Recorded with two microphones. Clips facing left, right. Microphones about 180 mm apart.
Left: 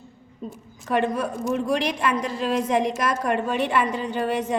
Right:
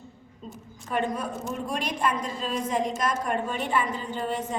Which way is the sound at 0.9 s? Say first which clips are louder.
Left 5 dB; 80° left.